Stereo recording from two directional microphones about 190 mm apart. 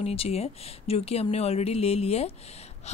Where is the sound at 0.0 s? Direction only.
30° left (ahead or behind).